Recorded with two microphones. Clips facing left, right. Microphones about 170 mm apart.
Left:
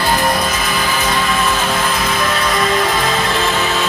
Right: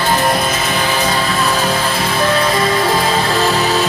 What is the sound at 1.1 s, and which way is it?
Music, 35° right (ahead or behind).